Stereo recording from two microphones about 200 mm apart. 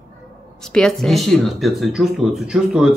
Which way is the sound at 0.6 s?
5° left (ahead or behind).